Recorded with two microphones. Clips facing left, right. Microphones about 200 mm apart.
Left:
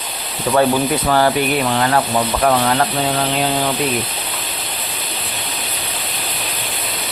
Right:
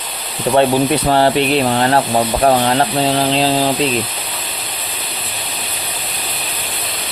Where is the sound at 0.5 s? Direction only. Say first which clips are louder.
Right 2 dB; 25° right (ahead or behind).